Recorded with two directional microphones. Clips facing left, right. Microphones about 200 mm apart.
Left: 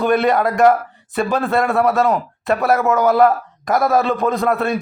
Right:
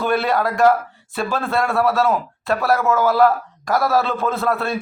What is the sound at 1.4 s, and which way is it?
Speech, centre (ahead or behind).